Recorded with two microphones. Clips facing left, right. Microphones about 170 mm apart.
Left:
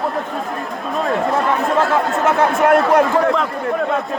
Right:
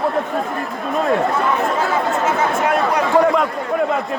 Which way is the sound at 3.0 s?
Centre (ahead or behind).